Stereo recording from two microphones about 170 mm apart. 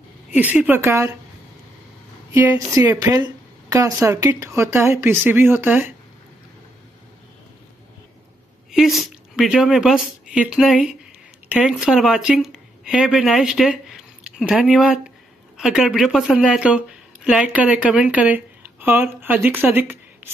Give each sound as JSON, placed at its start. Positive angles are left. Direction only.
{"t": 0.3, "sound": "a woman's voice", "side_deg": -10}
{"t": 2.3, "sound": "a woman's voice", "side_deg": -15}
{"t": 8.7, "sound": "a woman's voice", "side_deg": 0}